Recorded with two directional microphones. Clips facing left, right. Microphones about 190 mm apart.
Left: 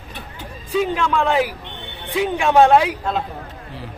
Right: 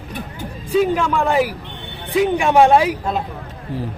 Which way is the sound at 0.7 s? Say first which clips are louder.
Right 3 dB; 10° right (ahead or behind).